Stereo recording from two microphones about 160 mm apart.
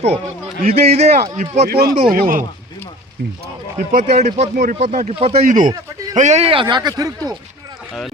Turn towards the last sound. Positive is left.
turn(degrees=-25)  # may be behind; listen again after turning